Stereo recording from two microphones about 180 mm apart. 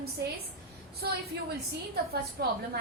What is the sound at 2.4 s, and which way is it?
Speech, 60° right (ahead or behind).